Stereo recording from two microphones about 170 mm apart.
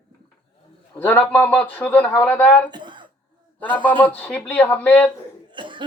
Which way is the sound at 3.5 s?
10° left (ahead or behind).